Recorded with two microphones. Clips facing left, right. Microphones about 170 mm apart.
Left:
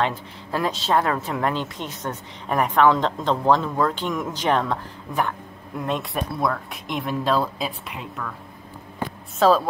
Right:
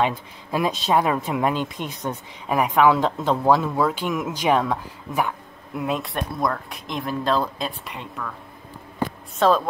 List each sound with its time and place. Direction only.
0.0 s speech: 15° right (ahead or behind); by 8.3 s 5° left (ahead or behind)
9.4 s speech: centre (ahead or behind)